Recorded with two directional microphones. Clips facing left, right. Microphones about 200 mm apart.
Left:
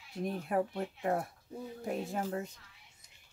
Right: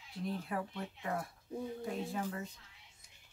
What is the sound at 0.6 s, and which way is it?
Speech, 40° left (ahead or behind).